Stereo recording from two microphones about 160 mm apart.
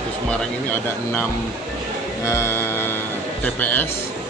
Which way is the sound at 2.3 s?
15° left (ahead or behind).